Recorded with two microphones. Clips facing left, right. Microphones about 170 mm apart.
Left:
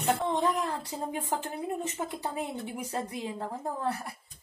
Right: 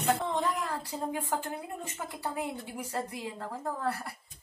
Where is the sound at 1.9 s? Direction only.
20° left (ahead or behind).